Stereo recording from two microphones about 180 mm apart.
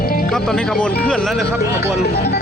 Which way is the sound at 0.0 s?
55° left (ahead or behind).